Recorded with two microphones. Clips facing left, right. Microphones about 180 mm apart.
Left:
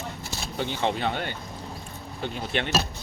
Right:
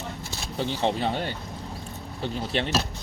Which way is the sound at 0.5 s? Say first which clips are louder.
Right 1 dB; 35° right (ahead or behind).